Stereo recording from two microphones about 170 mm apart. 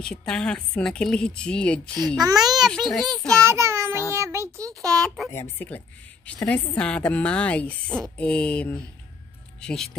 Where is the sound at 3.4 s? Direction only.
15° right (ahead or behind).